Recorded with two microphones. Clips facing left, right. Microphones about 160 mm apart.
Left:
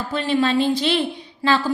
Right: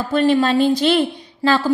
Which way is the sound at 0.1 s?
45° right (ahead or behind).